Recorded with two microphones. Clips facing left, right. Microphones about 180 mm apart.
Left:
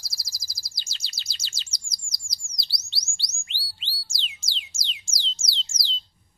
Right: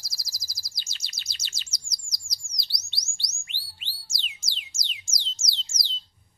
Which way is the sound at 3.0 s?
30° left (ahead or behind).